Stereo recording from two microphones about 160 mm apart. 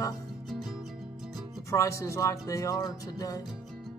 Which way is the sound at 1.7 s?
20° left (ahead or behind).